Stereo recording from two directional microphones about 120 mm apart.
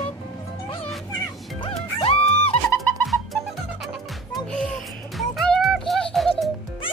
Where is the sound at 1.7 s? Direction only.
55° left (ahead or behind).